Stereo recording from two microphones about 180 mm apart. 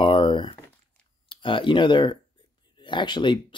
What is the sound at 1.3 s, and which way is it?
Speech, 30° left (ahead or behind).